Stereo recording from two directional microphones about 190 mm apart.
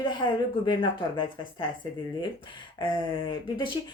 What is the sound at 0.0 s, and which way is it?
Speech, 25° left (ahead or behind).